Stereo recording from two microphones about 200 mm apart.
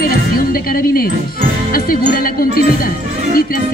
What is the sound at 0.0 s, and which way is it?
Music, 45° left (ahead or behind).